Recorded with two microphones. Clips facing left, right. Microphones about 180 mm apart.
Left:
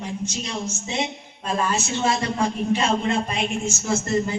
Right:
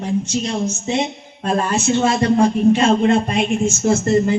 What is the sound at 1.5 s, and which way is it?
A man's voice, 50° right (ahead or behind).